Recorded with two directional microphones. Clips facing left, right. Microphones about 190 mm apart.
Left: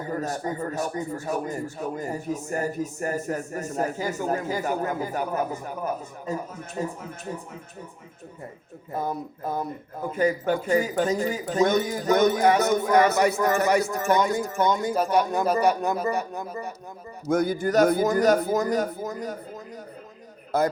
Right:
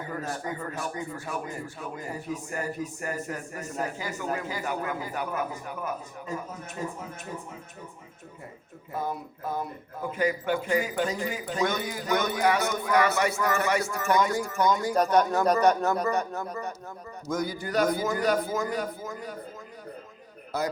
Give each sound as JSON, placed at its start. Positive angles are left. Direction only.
{"t": 0.0, "sound": "a man's voice", "side_deg": 40}
{"t": 8.9, "sound": "a man's voice", "side_deg": 40}
{"t": 14.2, "sound": "speech", "side_deg": 20}
{"t": 14.9, "sound": "speech", "side_deg": 5}
{"t": 17.2, "sound": "a man's voice", "side_deg": 55}
{"t": 20.5, "sound": "a man's voice", "side_deg": 50}